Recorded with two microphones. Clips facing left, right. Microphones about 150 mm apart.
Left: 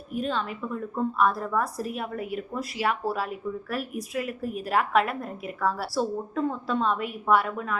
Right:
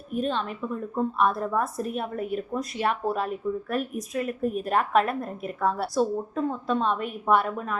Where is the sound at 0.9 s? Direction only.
20° right (ahead or behind).